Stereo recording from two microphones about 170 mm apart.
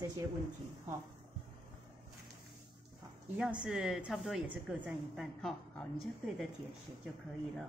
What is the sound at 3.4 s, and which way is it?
A woman's voice, 5° right (ahead or behind).